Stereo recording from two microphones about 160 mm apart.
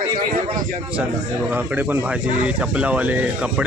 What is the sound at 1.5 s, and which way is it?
Speech, 10° right (ahead or behind).